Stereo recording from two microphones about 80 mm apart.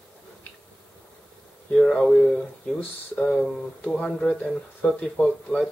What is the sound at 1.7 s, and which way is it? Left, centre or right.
Speech, centre.